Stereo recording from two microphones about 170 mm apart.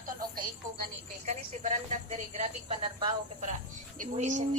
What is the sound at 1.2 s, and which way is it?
Speech, 40° right (ahead or behind).